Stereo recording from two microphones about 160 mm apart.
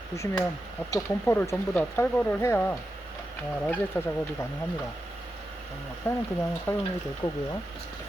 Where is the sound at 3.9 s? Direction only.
15° left (ahead or behind).